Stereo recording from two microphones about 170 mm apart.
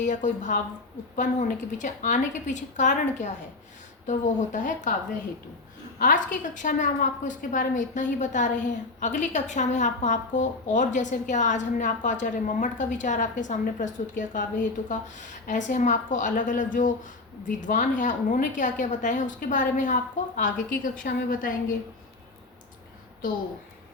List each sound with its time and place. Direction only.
0.0 s a woman's voice: 45° left (ahead or behind)
6.0 s a woman's voice: 50° left (ahead or behind)